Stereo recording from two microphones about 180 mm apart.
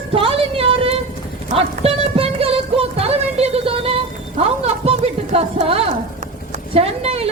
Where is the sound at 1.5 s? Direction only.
30° right (ahead or behind).